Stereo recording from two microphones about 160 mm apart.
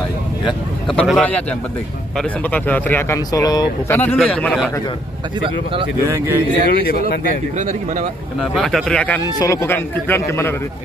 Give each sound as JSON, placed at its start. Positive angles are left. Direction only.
{"t": 0.5, "sound": "a man's voice", "side_deg": 0}
{"t": 3.9, "sound": "speech", "side_deg": 10}
{"t": 5.4, "sound": "speech", "side_deg": -35}
{"t": 6.0, "sound": "speech", "side_deg": -20}
{"t": 6.7, "sound": "speech", "side_deg": 70}
{"t": 7.2, "sound": "speech", "side_deg": -50}
{"t": 8.4, "sound": "a man's voice", "side_deg": 0}
{"t": 9.4, "sound": "speech", "side_deg": 20}